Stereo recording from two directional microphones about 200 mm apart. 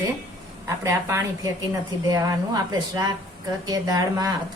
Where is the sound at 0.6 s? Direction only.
15° right (ahead or behind).